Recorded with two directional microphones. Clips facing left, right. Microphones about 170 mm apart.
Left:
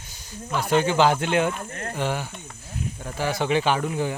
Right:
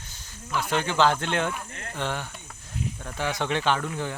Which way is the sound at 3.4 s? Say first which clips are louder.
Left 4 dB; 10° left (ahead or behind).